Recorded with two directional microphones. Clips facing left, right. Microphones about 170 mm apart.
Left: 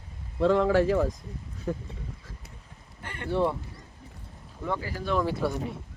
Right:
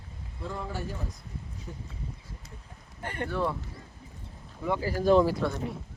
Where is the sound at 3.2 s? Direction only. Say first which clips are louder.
Left 4 dB; 25° left (ahead or behind).